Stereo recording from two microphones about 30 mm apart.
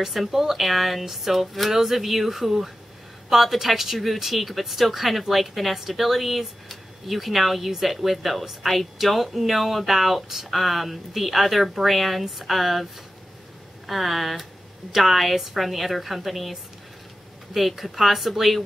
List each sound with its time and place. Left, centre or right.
0.1 s speech: centre
13.8 s speech: centre
17.6 s speech: centre